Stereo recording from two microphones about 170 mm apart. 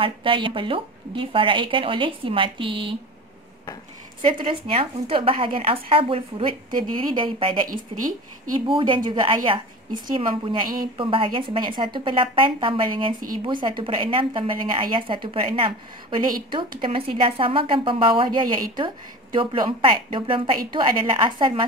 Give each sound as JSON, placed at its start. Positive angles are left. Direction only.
{"t": 0.0, "sound": "a woman's voice", "side_deg": -30}
{"t": 4.4, "sound": "a woman's voice", "side_deg": -30}
{"t": 8.5, "sound": "a woman's voice", "side_deg": -30}
{"t": 19.3, "sound": "a woman's voice", "side_deg": -30}